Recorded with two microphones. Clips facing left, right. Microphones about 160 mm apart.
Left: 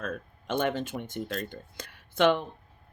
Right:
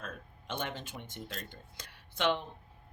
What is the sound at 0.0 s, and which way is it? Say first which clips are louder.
Speech: left 9 dB; 50° left (ahead or behind).